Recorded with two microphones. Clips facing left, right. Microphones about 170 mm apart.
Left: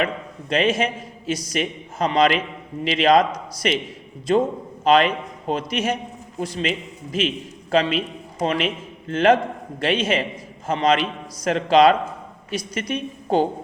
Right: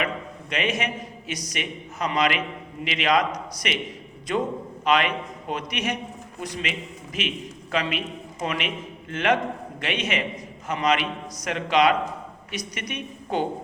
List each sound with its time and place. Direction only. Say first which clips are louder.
0.5 s a man's voice: left 6 dB; 30° left (ahead or behind)